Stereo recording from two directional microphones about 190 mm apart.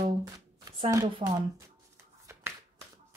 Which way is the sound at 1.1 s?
20° right (ahead or behind).